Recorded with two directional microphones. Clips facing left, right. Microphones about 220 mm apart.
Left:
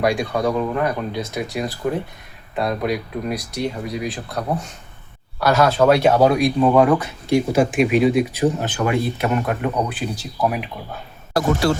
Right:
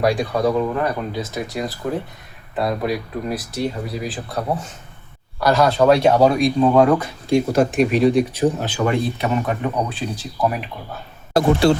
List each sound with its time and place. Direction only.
0.0 s speech: centre (ahead or behind)
11.3 s speech: 25° right (ahead or behind)